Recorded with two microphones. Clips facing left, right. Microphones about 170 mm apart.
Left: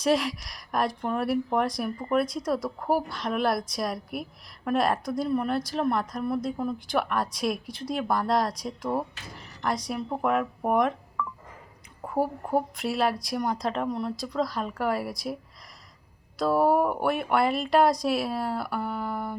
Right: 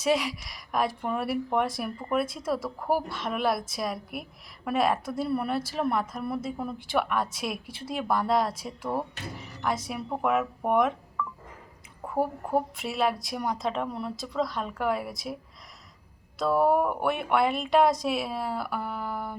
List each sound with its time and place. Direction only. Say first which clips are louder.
0.0 s speech: left 2 dB; centre (ahead or behind)
11.2 s telephone dialing: left 1 dB; 60° left (ahead or behind)
12.0 s speech: left 1 dB; centre (ahead or behind)
16.4 s speech: left 1 dB; centre (ahead or behind)